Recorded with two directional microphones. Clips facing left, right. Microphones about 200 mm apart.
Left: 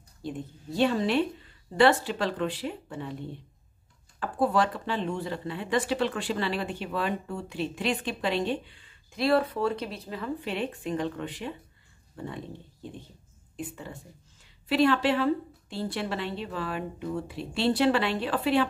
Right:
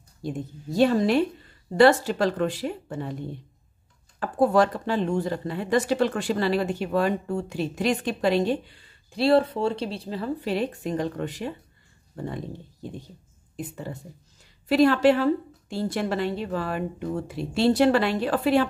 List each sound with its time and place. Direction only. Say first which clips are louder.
0.2 s speech: right 4 dB; 40° right (ahead or behind)
4.2 s speech: right 5 dB; 45° right (ahead or behind)
13.6 s speech: right 4 dB; 40° right (ahead or behind)